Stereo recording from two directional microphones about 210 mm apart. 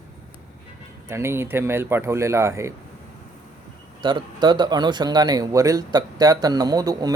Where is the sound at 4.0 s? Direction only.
20° right (ahead or behind).